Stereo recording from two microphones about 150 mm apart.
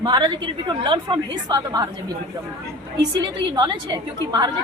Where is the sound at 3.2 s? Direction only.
30° right (ahead or behind).